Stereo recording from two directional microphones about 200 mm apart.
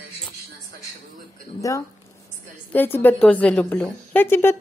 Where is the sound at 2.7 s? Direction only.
10° left (ahead or behind).